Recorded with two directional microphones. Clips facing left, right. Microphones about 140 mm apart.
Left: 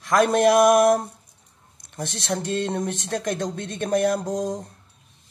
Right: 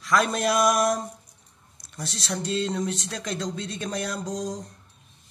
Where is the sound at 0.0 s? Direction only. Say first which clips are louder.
Left 6 dB; 50° left (ahead or behind).